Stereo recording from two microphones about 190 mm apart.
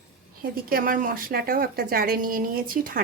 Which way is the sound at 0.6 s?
50° right (ahead or behind).